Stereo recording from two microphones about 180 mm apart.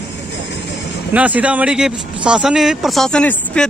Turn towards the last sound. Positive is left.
turn(degrees=5)  # may be behind; listen again after turning